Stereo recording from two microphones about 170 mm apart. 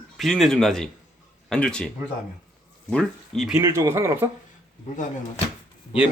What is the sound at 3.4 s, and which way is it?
Speech, 5° right (ahead or behind).